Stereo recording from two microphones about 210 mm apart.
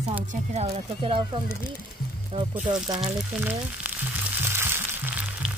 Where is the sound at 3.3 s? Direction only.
5° right (ahead or behind).